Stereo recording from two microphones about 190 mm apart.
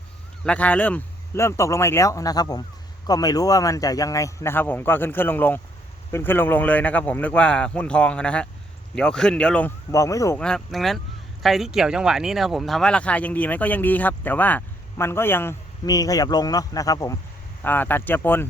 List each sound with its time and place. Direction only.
0.4 s speech: 5° left (ahead or behind)
10.4 s speech: centre (ahead or behind)